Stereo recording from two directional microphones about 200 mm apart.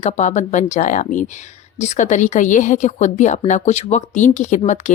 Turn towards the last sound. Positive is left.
turn(degrees=35)  # may be behind; listen again after turning